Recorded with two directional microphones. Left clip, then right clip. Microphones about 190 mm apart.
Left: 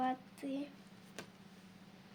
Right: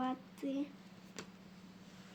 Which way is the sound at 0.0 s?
15° left (ahead or behind).